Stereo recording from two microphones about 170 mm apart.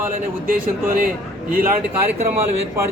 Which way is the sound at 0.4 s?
55° right (ahead or behind).